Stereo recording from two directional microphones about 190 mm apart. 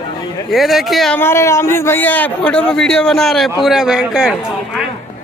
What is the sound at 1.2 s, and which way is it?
A man's voice, 15° left (ahead or behind).